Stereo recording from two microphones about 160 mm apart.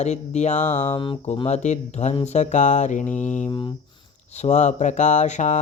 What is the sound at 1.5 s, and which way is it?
Speech, 45° left (ahead or behind).